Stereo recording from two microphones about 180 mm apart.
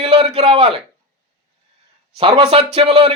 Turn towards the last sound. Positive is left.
turn(degrees=-35)  # may be behind; listen again after turning